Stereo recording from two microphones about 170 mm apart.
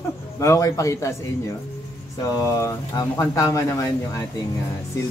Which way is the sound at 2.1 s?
20° left (ahead or behind).